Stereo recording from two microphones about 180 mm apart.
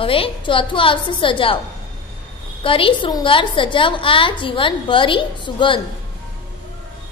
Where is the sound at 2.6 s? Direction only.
30° left (ahead or behind).